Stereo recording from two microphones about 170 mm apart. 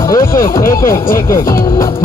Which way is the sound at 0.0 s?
15° left (ahead or behind).